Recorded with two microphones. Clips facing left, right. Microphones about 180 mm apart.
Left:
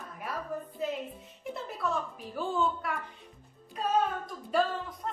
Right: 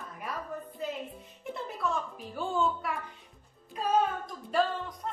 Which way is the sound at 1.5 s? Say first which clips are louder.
Even; centre (ahead or behind).